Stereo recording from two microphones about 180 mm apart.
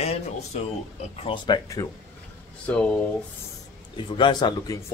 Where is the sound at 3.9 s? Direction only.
25° left (ahead or behind).